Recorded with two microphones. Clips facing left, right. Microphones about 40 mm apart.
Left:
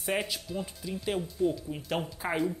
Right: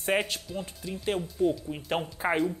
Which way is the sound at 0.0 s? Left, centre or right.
Centre.